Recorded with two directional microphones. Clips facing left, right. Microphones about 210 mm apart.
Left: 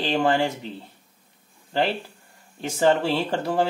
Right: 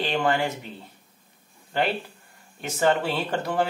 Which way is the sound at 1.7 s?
30° left (ahead or behind).